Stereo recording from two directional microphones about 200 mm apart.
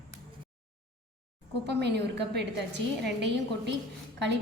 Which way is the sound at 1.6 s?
55° right (ahead or behind).